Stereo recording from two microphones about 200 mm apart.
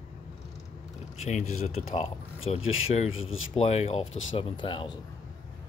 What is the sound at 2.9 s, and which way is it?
Speech, 30° left (ahead or behind).